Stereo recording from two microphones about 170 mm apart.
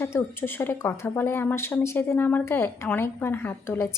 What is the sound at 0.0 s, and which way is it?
Speech, 15° left (ahead or behind).